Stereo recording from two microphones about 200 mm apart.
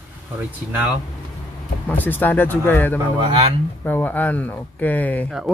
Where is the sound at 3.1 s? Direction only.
30° right (ahead or behind).